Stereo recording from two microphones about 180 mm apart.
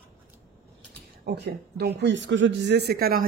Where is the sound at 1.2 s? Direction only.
65° right (ahead or behind).